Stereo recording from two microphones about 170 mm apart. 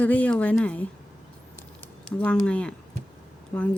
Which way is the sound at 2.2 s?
5° left (ahead or behind).